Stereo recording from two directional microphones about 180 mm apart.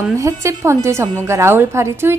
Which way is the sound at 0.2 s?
15° right (ahead or behind).